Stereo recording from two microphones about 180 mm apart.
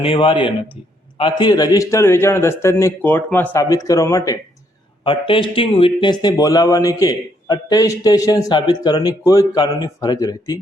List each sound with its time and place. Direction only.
0.0 s a man's voice: 30° left (ahead or behind)
5.0 s speech: 30° left (ahead or behind)